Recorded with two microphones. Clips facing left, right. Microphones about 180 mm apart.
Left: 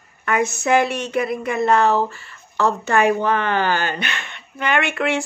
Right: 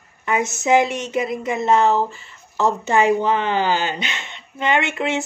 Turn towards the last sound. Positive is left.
turn(degrees=-20)  # may be behind; listen again after turning